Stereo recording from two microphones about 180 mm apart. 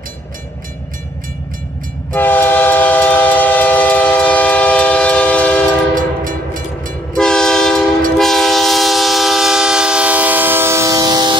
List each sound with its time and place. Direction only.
2.1 s train: 10° left (ahead or behind)
5.9 s train: 50° right (ahead or behind)
7.2 s train: 5° left (ahead or behind); by 11.3 s 20° right (ahead or behind)